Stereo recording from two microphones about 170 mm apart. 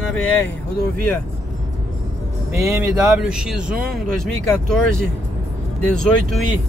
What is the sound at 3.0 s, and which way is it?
Speech, 5° right (ahead or behind).